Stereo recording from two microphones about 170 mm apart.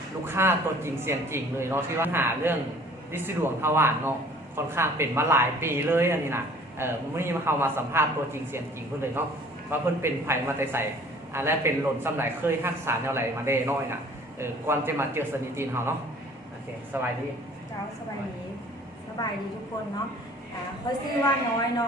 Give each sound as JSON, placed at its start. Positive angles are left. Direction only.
{"t": 0.3, "sound": "a woman's voice", "side_deg": -15}
{"t": 16.9, "sound": "a woman's voice", "side_deg": -15}
{"t": 20.9, "sound": "a woman's voice", "side_deg": 25}